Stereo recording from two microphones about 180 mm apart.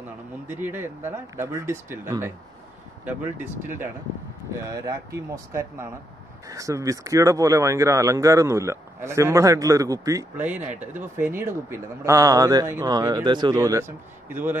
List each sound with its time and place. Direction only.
0.5 s speech: 10° right (ahead or behind)
4.6 s speech: 20° right (ahead or behind)